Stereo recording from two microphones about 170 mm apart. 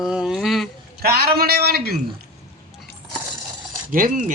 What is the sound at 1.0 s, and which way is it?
Speech, 65° right (ahead or behind).